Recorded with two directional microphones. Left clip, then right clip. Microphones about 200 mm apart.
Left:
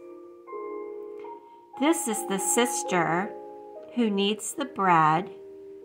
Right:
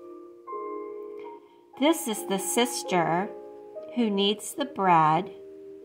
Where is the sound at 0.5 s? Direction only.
45° right (ahead or behind).